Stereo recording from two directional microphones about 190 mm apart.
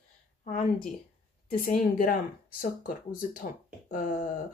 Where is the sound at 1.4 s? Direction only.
45° left (ahead or behind).